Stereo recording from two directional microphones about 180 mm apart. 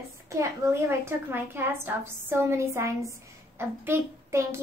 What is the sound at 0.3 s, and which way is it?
A woman's voice, 15° right (ahead or behind).